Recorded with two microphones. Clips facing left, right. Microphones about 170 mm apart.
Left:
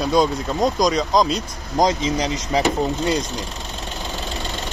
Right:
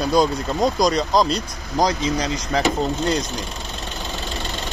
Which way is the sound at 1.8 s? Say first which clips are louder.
Left 1 dB; 20° left (ahead or behind).